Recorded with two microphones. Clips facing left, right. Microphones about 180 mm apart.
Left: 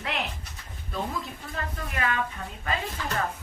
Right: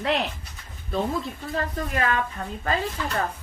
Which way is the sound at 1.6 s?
40° right (ahead or behind).